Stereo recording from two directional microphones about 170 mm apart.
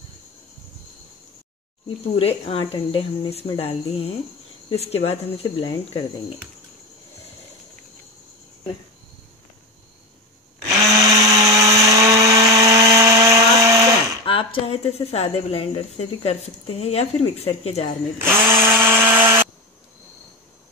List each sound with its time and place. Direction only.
1.9 s speech: 35° left (ahead or behind)
10.7 s blender: 20° right (ahead or behind)
14.2 s speech: 30° left (ahead or behind)
18.8 s tools: 15° right (ahead or behind)